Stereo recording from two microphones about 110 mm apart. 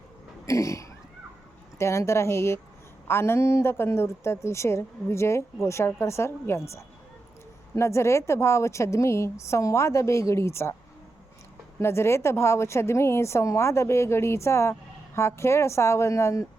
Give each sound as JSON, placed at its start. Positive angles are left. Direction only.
{"t": 0.4, "sound": "a woman's voice", "side_deg": 30}
{"t": 11.8, "sound": "a woman's voice", "side_deg": 25}